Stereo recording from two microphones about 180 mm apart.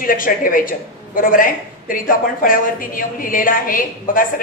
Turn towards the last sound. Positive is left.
turn(degrees=50)  # may be behind; listen again after turning